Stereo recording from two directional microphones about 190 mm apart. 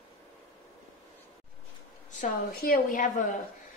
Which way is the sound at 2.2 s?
50° left (ahead or behind).